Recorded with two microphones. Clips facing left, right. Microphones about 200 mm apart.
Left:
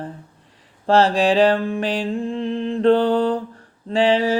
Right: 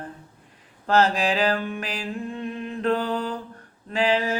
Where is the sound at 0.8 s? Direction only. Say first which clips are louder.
Left 5 dB; 30° left (ahead or behind).